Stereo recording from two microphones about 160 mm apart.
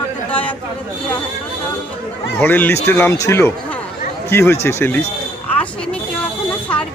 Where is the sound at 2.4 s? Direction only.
10° left (ahead or behind).